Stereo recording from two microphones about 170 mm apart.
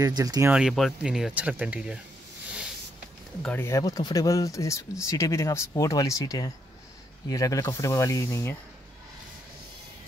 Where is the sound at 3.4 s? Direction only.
10° left (ahead or behind).